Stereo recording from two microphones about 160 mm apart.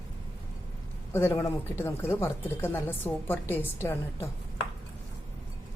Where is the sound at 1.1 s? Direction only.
15° left (ahead or behind).